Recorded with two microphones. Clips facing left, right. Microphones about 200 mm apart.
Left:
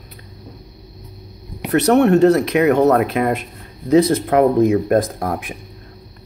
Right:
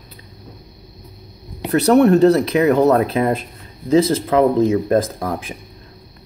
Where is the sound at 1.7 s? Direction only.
35° right (ahead or behind).